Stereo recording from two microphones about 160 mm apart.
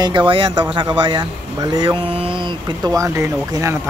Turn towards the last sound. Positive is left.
turn(degrees=-15)  # may be behind; listen again after turning